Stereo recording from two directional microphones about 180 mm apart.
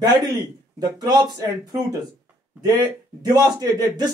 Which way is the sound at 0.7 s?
20° right (ahead or behind).